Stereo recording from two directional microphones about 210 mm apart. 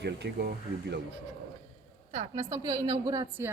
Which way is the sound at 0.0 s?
50° right (ahead or behind).